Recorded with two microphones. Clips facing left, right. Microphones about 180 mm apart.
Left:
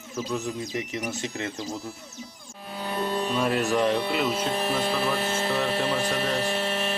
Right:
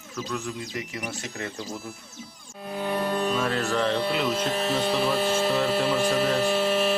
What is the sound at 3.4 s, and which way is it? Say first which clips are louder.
Speech: left 2 dB; 15° left (ahead or behind).